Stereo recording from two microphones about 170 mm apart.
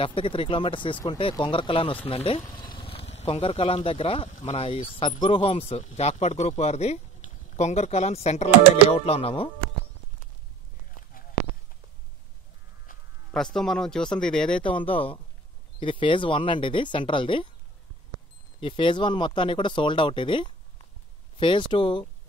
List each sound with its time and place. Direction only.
0.0 s speech: 30° left (ahead or behind)
12.9 s a sound: 55° left (ahead or behind)
13.3 s speech: 5° left (ahead or behind)
14.6 s speech: 30° left (ahead or behind)
18.6 s speech: 30° left (ahead or behind)